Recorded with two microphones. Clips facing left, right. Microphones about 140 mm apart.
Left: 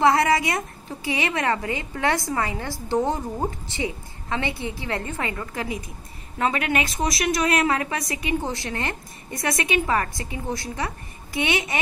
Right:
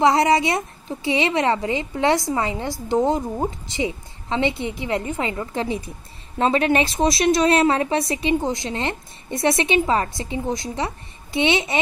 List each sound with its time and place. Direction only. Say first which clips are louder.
0.0 s a woman's voice: right 2 dB; 20° right (ahead or behind)
8.4 s a woman's voice: right 4 dB; 15° right (ahead or behind)